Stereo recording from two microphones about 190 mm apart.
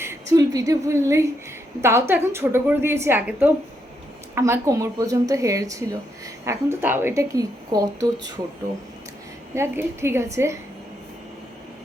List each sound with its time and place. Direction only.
0.0 s a woman's voice: 15° right (ahead or behind)
9.6 s a woman's voice: 15° right (ahead or behind)